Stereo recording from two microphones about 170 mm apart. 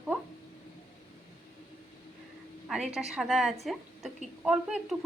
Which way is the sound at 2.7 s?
Centre (ahead or behind).